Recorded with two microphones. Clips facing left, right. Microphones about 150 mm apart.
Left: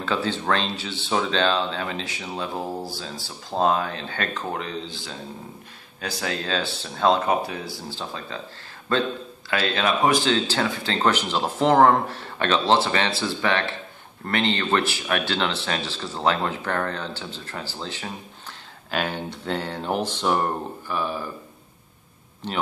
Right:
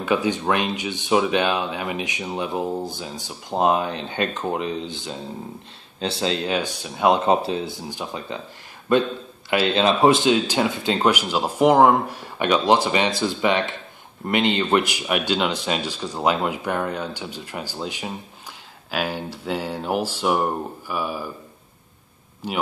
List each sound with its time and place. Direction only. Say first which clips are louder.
0.0 s speech: right 4 dB; 15° right (ahead or behind)
22.4 s speech: right 2 dB; 10° right (ahead or behind)